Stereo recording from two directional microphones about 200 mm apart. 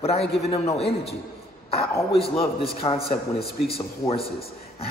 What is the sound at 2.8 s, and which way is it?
Speech, 25° left (ahead or behind).